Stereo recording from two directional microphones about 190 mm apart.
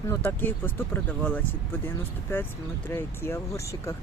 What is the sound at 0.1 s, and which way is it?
Speech, 10° left (ahead or behind).